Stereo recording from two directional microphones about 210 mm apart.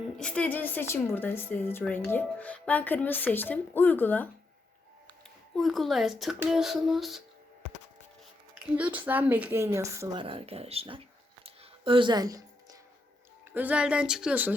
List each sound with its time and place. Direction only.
0.2 s a woman's voice: 5° left (ahead or behind)
5.5 s speech: centre (ahead or behind)
8.7 s speech: 10° right (ahead or behind); by 11.0 s 25° right (ahead or behind)
11.4 s a sound: 25° right (ahead or behind)
13.5 s speech: 5° right (ahead or behind)